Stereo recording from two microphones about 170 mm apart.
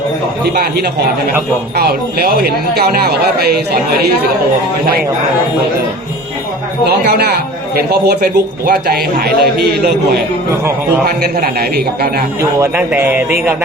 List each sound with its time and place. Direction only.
0.5 s a man's voice: 65° right (ahead or behind)
6.8 s a man's voice: 70° right (ahead or behind)
12.4 s speech: 15° right (ahead or behind)